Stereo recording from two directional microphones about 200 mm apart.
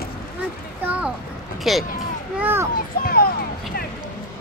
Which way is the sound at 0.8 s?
5° right (ahead or behind).